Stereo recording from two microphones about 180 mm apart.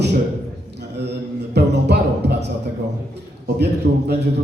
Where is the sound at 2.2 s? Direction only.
70° right (ahead or behind).